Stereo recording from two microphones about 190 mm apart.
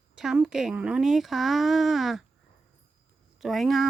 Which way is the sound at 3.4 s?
Centre (ahead or behind).